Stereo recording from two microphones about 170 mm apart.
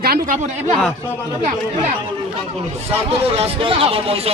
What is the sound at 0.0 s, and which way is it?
Speech, 65° right (ahead or behind).